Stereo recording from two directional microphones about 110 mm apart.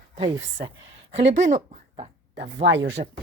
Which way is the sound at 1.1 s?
90° right.